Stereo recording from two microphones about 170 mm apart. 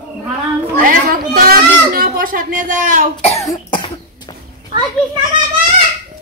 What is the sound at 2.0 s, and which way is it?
Speech, 55° right (ahead or behind).